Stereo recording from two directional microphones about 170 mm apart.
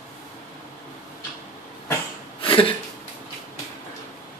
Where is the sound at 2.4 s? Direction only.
30° left (ahead or behind).